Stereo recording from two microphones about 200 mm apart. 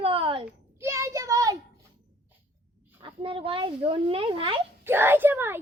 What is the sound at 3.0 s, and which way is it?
A child's voice, 25° right (ahead or behind).